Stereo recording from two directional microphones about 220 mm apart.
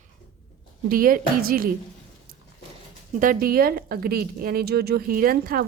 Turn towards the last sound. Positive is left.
turn(degrees=-40)  # may be behind; listen again after turning